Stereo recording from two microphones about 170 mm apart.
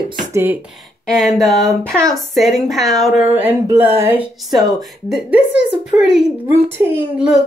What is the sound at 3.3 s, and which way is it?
Speech, 10° right (ahead or behind).